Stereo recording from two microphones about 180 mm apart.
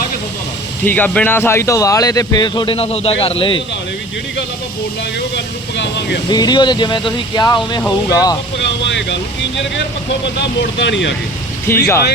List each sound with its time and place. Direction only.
0.9 s speech: 10° left (ahead or behind); by 3.6 s 30° left (ahead or behind)
5.7 s speech: 75° left (ahead or behind)
6.3 s speech: 25° left (ahead or behind)
8.9 s speech: 75° left (ahead or behind)
10.4 s speech: 75° left (ahead or behind)
11.7 s speech: 15° left (ahead or behind)